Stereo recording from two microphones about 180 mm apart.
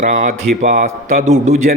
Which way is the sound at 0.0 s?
45° right (ahead or behind).